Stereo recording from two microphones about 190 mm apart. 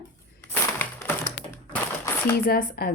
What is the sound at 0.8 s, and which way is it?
Crushing, 10° left (ahead or behind).